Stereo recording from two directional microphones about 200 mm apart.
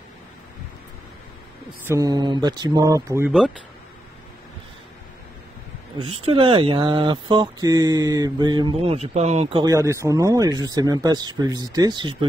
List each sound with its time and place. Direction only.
1.9 s speech: 20° right (ahead or behind)
6.2 s speech: 25° right (ahead or behind)